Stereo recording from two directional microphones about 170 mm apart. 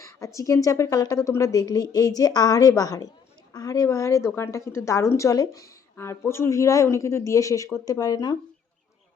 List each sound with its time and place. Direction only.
0.3 s a woman's voice: 20° left (ahead or behind)